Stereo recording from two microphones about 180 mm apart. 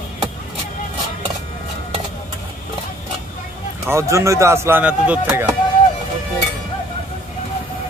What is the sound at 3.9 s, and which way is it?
Speech, 15° right (ahead or behind).